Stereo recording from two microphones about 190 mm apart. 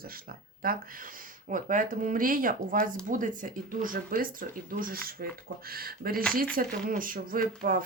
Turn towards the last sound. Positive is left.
turn(degrees=-50)  # may be behind; listen again after turning